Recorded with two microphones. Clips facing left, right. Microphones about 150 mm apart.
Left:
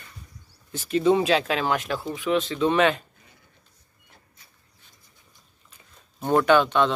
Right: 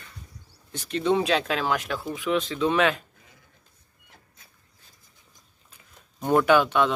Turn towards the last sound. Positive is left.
turn(degrees=-10)  # may be behind; listen again after turning